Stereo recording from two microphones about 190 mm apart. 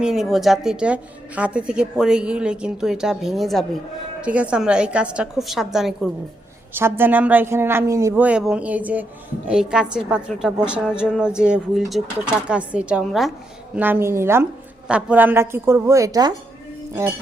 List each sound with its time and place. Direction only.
0.0 s a woman's voice: centre (ahead or behind)
6.7 s a woman's voice: 10° right (ahead or behind)